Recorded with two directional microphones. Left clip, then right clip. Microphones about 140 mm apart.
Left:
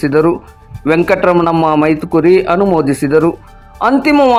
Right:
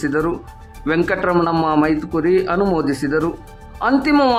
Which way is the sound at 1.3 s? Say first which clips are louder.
Left 5 dB; 5° left (ahead or behind).